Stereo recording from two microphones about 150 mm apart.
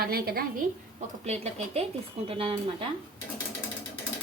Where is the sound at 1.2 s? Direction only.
45° right (ahead or behind).